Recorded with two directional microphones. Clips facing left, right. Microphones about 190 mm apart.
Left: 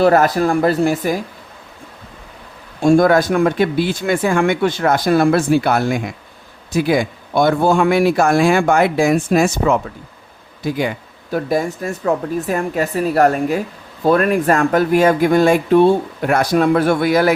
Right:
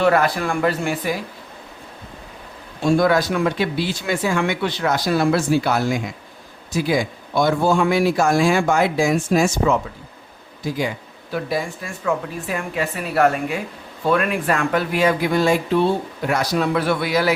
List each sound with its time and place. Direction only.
0.0 s speech: 40° left (ahead or behind)
2.8 s a man's voice: 50° left (ahead or behind)
11.3 s speech: 45° left (ahead or behind)